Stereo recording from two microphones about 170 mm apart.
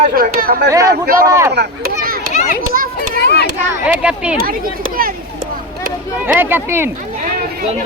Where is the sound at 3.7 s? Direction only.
5° right (ahead or behind).